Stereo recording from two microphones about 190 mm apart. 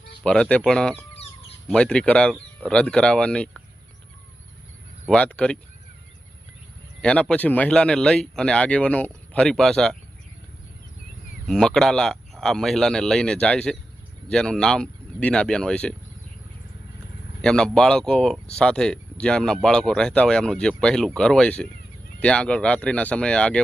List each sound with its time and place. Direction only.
0.3 s speech: 5° left (ahead or behind)
1.1 s a sound: 30° left (ahead or behind)
1.6 s speech: 5° left (ahead or behind)
5.0 s speech: 5° left (ahead or behind)
7.0 s speech: 5° left (ahead or behind)
11.4 s speech: 5° left (ahead or behind)
17.4 s speech: 5° left (ahead or behind)